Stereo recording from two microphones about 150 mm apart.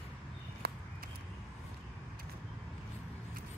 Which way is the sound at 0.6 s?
90° right.